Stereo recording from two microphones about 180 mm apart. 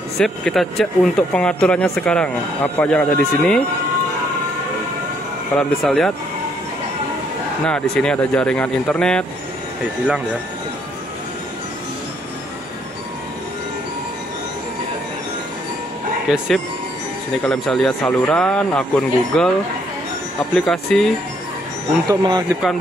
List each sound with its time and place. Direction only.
0.2 s speech: centre (ahead or behind)
5.6 s speech: 5° left (ahead or behind)
7.6 s speech: 5° left (ahead or behind)
16.3 s speech: centre (ahead or behind)
20.5 s speech: 5° left (ahead or behind)
22.0 s speech: 20° right (ahead or behind)